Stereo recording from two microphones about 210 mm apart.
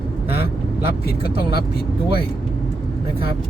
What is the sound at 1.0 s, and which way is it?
Speech, 50° left (ahead or behind).